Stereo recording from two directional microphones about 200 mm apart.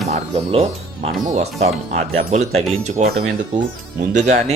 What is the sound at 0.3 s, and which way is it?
Speech, 30° right (ahead or behind).